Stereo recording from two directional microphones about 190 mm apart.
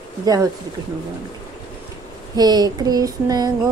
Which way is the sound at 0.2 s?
20° right (ahead or behind).